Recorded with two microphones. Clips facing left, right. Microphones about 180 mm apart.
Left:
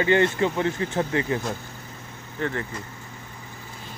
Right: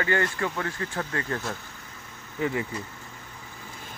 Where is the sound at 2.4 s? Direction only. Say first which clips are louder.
Right 1 dB; 10° right (ahead or behind).